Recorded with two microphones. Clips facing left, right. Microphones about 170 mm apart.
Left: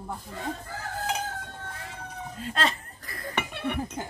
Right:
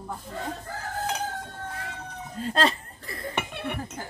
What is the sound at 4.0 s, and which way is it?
Music, 20° left (ahead or behind).